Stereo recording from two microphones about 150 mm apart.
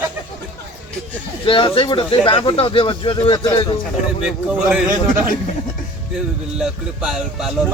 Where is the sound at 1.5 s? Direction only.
35° left (ahead or behind).